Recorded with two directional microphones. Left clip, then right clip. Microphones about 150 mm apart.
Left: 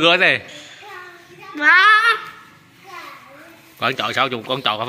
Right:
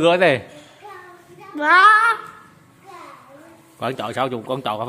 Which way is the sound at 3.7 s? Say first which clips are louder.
Left 4 dB; 15° right (ahead or behind).